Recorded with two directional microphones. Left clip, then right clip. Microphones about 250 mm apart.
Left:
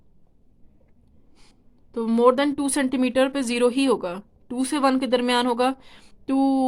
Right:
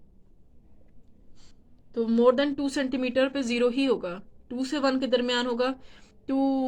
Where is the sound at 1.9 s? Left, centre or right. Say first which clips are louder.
Left 3 dB; left.